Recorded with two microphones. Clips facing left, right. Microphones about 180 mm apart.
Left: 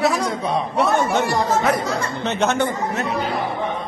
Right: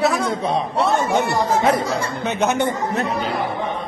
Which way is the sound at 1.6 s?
30° right (ahead or behind).